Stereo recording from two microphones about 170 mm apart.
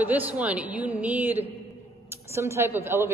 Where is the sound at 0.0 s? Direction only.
10° right (ahead or behind).